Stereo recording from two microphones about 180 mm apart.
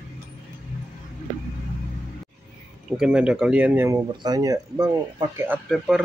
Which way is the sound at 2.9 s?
5° right (ahead or behind).